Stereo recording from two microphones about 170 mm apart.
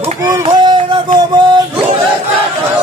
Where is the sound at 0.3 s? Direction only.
25° right (ahead or behind).